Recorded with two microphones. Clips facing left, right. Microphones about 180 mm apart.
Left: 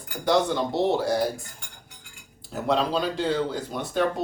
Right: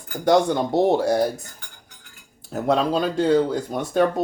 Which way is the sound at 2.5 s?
50° right (ahead or behind).